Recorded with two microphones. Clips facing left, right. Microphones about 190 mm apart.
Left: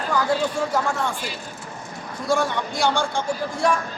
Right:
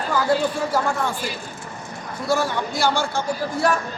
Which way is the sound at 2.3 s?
5° right (ahead or behind).